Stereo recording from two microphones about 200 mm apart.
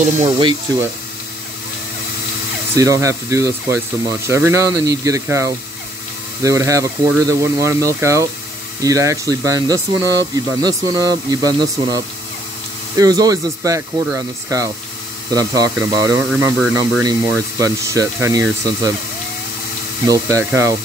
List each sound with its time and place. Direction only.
0.0 s speech: 30° right (ahead or behind)
2.7 s speech: 15° right (ahead or behind)
20.1 s speech: 15° right (ahead or behind)